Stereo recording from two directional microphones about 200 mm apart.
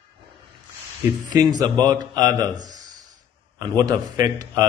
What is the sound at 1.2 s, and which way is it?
A man's voice, 20° right (ahead or behind).